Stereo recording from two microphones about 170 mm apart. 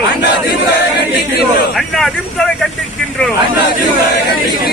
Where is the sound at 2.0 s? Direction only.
Centre (ahead or behind).